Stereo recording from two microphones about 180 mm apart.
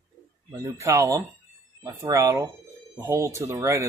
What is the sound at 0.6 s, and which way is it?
Speech, 15° right (ahead or behind).